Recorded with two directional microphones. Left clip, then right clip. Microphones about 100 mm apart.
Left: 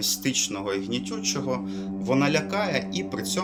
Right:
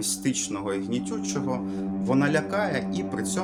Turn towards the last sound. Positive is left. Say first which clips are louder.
# even
turn(degrees=-35)  # may be behind; listen again after turning